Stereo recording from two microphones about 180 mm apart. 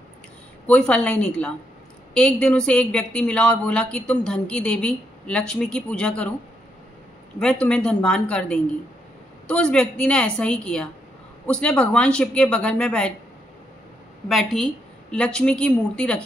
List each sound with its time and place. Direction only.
0.7 s speech: 5° left (ahead or behind)
7.6 s speech: 5° left (ahead or behind)
14.3 s speech: 5° left (ahead or behind)